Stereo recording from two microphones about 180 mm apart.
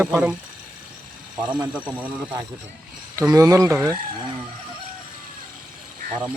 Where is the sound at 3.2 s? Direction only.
20° right (ahead or behind).